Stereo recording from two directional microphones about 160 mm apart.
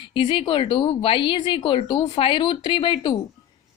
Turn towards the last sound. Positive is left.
turn(degrees=30)  # may be behind; listen again after turning